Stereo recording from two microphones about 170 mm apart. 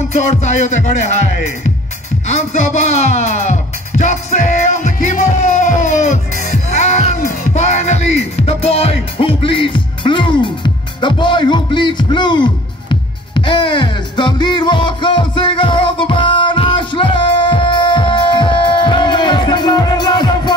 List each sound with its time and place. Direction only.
0.1 s music: 40° left (ahead or behind); by 20.5 s 25° left (ahead or behind)